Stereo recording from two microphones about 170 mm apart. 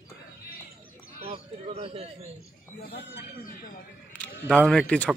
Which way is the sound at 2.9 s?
70° left (ahead or behind).